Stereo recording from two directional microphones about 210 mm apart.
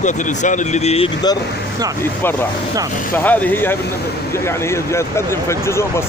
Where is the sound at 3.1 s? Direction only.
10° left (ahead or behind).